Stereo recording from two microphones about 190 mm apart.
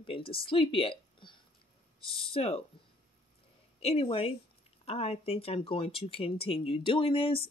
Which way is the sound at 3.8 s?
30° left (ahead or behind).